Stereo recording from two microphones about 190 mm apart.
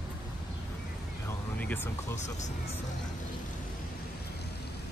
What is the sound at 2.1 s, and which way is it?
Speech, 35° left (ahead or behind).